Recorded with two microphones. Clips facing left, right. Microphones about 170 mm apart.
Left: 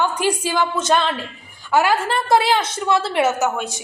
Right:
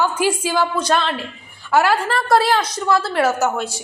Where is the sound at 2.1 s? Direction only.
25° left (ahead or behind).